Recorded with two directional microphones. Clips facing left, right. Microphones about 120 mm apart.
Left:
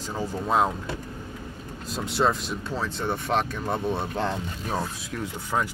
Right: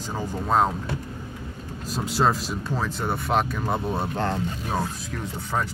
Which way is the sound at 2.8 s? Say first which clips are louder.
Even; 45° right (ahead or behind).